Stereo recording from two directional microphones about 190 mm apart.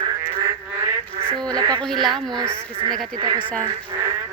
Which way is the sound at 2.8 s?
25° right (ahead or behind).